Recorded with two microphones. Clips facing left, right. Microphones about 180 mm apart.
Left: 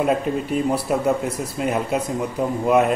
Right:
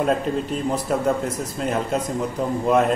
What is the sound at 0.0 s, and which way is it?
A man's voice, 10° left (ahead or behind).